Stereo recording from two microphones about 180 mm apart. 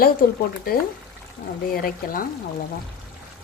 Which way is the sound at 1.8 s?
50° left (ahead or behind).